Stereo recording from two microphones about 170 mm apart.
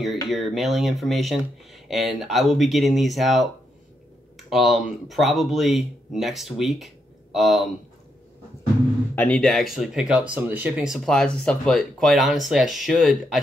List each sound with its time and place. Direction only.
0.0 s speech: centre (ahead or behind)
4.5 s speech: centre (ahead or behind)
9.1 s speech: 10° left (ahead or behind)